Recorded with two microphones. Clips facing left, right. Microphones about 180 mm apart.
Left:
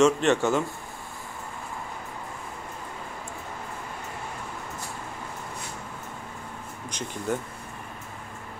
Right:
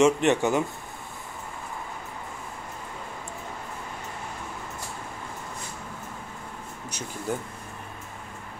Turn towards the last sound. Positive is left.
turn(degrees=-10)  # may be behind; listen again after turning